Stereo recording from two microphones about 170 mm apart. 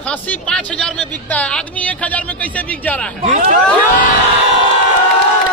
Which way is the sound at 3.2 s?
45° right (ahead or behind).